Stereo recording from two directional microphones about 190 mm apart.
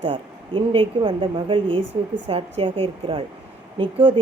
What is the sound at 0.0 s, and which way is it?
Speech, 30° right (ahead or behind).